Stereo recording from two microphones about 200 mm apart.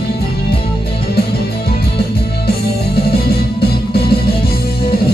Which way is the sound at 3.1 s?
50° left (ahead or behind).